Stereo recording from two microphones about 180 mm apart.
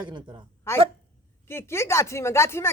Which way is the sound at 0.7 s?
15° left (ahead or behind).